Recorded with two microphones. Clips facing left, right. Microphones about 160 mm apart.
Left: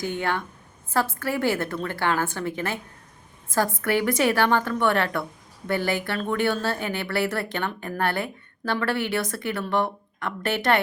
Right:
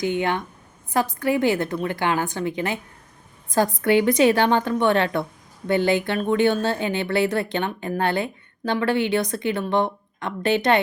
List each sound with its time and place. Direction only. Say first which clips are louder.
0.0 s a woman's voice: right 4 dB; 20° right (ahead or behind)